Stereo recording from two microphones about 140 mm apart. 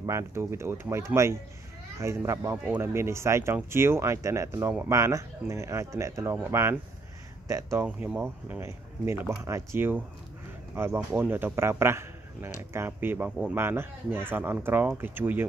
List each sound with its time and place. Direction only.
0.0 s speech: 20° right (ahead or behind)
7.8 s speech: 10° right (ahead or behind)
11.8 s a sound: 20° right (ahead or behind)
12.5 s speech: 15° right (ahead or behind)